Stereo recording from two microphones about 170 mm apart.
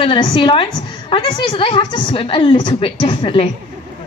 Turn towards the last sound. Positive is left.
turn(degrees=30)  # may be behind; listen again after turning